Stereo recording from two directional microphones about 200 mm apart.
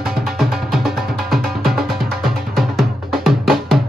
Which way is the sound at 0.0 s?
Centre (ahead or behind).